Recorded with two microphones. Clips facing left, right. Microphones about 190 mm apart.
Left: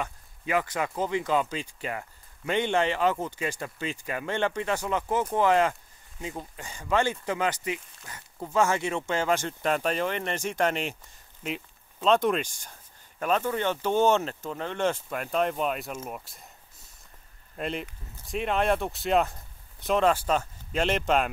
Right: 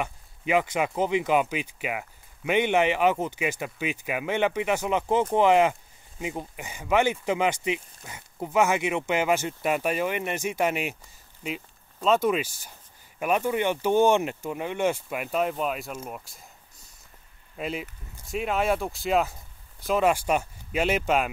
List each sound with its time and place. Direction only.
0.0 s speech: 15° right (ahead or behind)
20.1 s speech: 15° right (ahead or behind)